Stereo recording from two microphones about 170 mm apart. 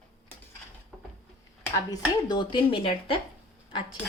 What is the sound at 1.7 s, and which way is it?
Speech, 25° left (ahead or behind).